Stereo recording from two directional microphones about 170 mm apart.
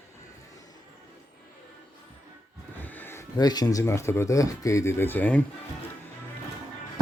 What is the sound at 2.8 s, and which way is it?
Speech, 10° left (ahead or behind).